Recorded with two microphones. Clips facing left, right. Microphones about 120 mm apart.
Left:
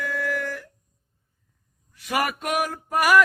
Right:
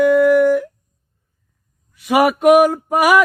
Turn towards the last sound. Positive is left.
turn(degrees=-60)  # may be behind; listen again after turning